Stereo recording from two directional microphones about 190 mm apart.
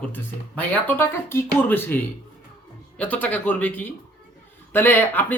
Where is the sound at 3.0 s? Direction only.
10° left (ahead or behind).